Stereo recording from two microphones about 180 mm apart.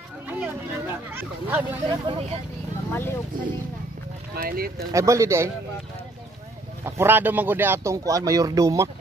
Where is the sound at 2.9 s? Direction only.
10° left (ahead or behind).